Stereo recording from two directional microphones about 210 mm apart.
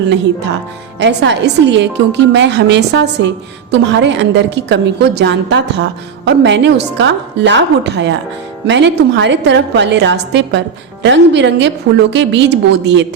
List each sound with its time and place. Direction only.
0.9 s a woman's voice: 55° right (ahead or behind)